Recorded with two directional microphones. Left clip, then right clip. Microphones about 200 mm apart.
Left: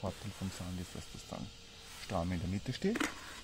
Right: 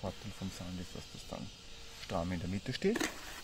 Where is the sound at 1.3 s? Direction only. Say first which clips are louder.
Right 1 dB; 5° left (ahead or behind).